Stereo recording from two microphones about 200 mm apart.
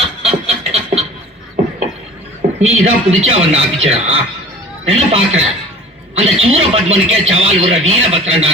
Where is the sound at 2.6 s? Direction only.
80° right.